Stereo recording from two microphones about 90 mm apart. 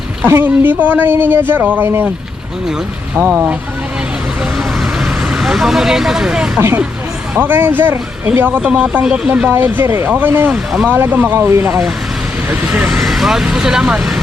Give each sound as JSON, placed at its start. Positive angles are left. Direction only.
{"t": 0.3, "sound": "speech", "side_deg": -25}
{"t": 3.2, "sound": "speech", "side_deg": -15}
{"t": 5.3, "sound": "speech", "side_deg": -5}
{"t": 6.6, "sound": "speech", "side_deg": -25}
{"t": 12.5, "sound": "speech", "side_deg": -15}
{"t": 12.9, "sound": "speech", "side_deg": 0}